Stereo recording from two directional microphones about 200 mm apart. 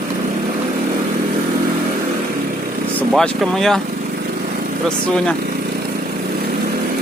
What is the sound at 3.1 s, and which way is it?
Speech, centre (ahead or behind).